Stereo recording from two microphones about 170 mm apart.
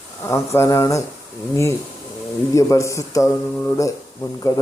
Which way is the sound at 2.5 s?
20° left (ahead or behind).